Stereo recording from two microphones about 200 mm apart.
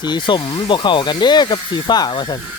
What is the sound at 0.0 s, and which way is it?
Speech, 20° left (ahead or behind).